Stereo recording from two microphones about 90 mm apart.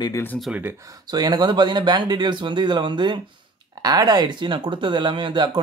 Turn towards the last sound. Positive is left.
turn(degrees=-60)  # may be behind; listen again after turning